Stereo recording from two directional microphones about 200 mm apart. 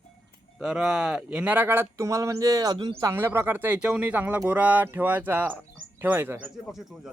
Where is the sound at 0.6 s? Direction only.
5° right (ahead or behind).